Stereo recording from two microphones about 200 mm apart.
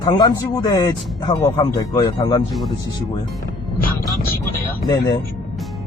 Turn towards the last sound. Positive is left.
turn(degrees=20)  # may be behind; listen again after turning